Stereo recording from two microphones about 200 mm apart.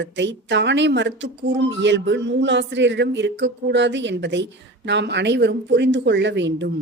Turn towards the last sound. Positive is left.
turn(degrees=-60)  # may be behind; listen again after turning